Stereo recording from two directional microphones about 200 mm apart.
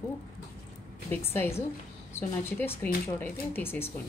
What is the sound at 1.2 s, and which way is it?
A woman's voice, 10° left (ahead or behind).